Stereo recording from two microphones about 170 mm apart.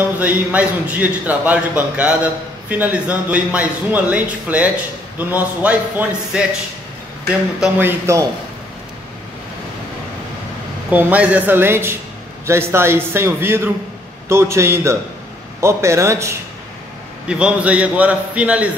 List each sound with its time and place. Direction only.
0.2 s a man's voice: 10° right (ahead or behind)
7.6 s a man's voice: 15° right (ahead or behind)
10.9 s a man's voice: 10° right (ahead or behind)